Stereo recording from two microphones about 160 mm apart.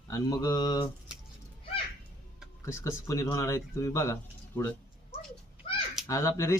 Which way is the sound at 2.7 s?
15° left (ahead or behind).